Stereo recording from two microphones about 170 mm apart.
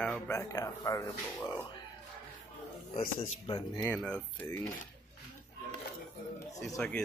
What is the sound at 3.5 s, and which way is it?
Speech, 20° left (ahead or behind).